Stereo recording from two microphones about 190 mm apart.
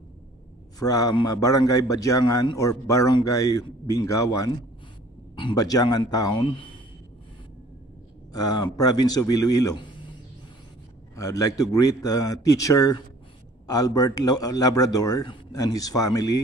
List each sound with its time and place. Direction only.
0.7 s a man's voice: 20° left (ahead or behind)
8.3 s a man's voice: 20° left (ahead or behind)
11.1 s a man's voice: 20° left (ahead or behind)